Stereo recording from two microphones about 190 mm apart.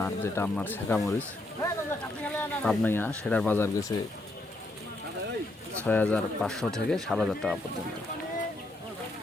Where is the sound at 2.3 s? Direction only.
5° left (ahead or behind).